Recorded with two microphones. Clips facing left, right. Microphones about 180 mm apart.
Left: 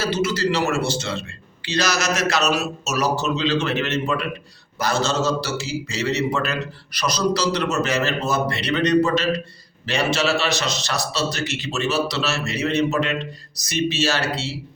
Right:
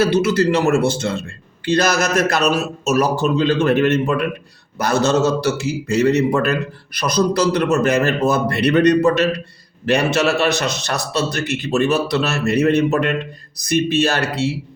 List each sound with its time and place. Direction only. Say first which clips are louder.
0.0 s a man's voice: right 7 dB; 60° right (ahead or behind)